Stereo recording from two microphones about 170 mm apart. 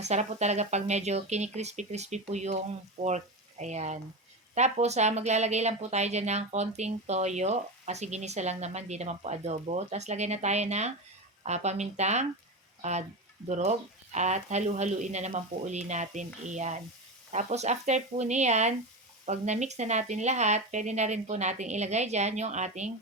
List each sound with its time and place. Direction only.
0.0 s a woman's voice: 40° right (ahead or behind)
3.6 s a woman's voice: 40° right (ahead or behind)